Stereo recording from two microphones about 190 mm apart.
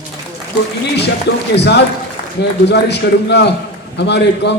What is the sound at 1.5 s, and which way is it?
A man's voice, 65° left (ahead or behind).